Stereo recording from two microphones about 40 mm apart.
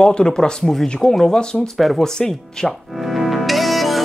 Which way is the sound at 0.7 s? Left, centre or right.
Centre.